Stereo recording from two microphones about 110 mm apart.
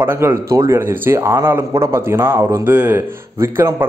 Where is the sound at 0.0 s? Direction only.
20° right (ahead or behind).